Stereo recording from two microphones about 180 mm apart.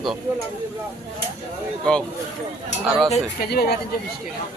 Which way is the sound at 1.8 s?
5° left (ahead or behind).